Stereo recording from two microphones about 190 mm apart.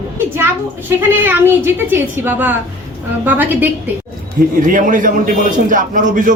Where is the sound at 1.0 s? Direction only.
10° right (ahead or behind).